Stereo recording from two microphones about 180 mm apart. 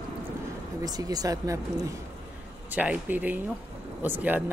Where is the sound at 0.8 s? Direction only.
20° right (ahead or behind).